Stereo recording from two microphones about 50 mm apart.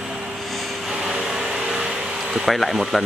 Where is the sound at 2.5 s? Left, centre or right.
Centre.